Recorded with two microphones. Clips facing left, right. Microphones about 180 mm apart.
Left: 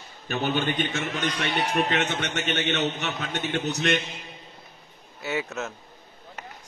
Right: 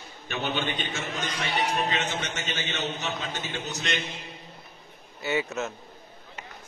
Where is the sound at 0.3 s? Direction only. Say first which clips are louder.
Left 4 dB; 45° left (ahead or behind).